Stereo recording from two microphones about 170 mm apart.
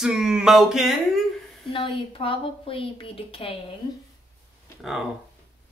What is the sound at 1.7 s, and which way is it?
A woman's voice, 30° left (ahead or behind).